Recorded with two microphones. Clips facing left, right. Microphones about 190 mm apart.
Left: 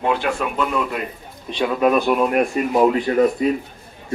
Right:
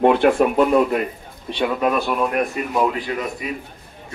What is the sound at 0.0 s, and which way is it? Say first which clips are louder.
Speech: right 7 dB; 55° right (ahead or behind).